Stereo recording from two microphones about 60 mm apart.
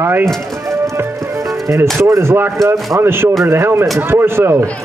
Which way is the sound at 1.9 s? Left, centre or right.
Right.